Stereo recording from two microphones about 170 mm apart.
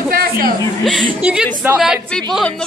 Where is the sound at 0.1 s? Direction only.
60° right (ahead or behind).